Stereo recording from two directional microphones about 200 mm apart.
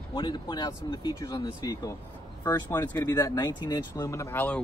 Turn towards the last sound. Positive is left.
turn(degrees=10)  # may be behind; listen again after turning